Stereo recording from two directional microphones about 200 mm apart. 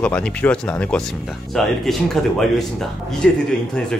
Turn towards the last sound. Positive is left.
turn(degrees=5)  # may be behind; listen again after turning